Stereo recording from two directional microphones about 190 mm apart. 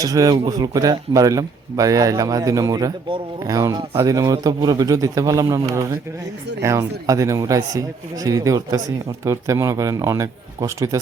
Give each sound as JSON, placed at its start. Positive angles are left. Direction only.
{"t": 0.0, "sound": "a man's voice", "side_deg": -20}